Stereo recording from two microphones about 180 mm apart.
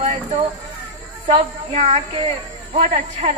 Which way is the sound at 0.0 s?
40° right (ahead or behind).